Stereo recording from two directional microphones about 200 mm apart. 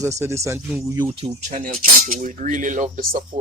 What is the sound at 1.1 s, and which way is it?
Speech, 30° right (ahead or behind).